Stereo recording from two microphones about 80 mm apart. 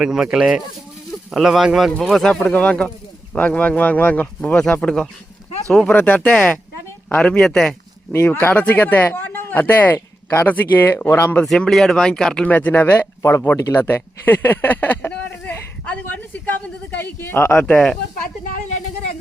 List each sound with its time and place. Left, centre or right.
0.0 s speech: centre
2.5 s speech: centre
5.9 s speech: left
6.1 s speech: centre
8.1 s speech: left
11.4 s speech: centre
13.2 s speech: left
13.7 s a sound: left
17.0 s speech: left